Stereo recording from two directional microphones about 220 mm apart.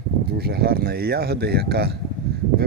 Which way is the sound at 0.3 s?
45° right (ahead or behind).